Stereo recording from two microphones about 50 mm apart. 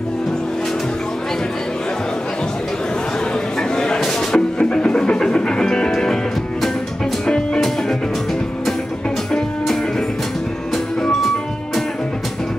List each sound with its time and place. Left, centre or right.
3.5 s music: centre
7.2 s music: centre
11.0 s music: centre